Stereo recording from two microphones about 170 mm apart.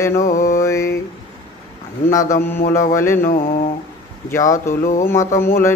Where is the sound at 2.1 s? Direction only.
20° left (ahead or behind).